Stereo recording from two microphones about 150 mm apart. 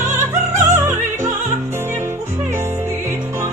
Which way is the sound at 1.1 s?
15° right (ahead or behind).